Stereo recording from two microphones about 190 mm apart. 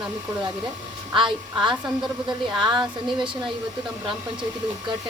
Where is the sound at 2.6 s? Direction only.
25° right (ahead or behind).